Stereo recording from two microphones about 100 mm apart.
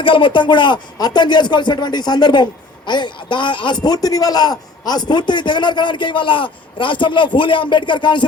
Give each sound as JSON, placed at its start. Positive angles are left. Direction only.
{"t": 0.0, "sound": "a man's voice", "side_deg": 60}
{"t": 3.8, "sound": "a man's voice", "side_deg": 35}